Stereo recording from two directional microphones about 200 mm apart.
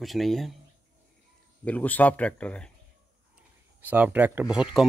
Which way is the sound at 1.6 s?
10° left (ahead or behind).